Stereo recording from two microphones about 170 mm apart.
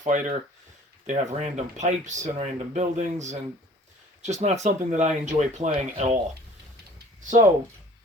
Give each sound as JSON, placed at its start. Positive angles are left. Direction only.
{"t": 0.0, "sound": "speech", "side_deg": -50}
{"t": 7.2, "sound": "speech", "side_deg": -45}